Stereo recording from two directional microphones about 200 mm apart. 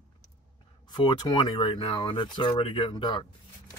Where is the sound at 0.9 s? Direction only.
20° left (ahead or behind).